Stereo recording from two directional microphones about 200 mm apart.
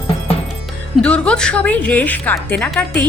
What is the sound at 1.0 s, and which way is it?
Speech, 5° left (ahead or behind).